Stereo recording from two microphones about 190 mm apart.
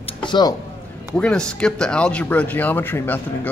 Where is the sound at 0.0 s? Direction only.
25° left (ahead or behind).